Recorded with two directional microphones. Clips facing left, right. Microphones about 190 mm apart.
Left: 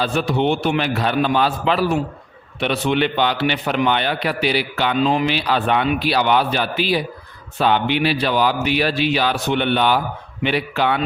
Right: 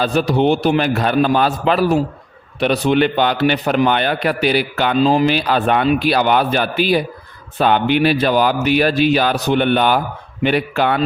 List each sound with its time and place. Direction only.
0.0 s a man's voice: 40° right (ahead or behind)
4.9 s speech: 35° right (ahead or behind)